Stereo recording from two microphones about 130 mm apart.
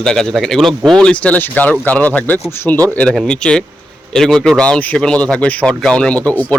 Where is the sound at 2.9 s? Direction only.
5° left (ahead or behind).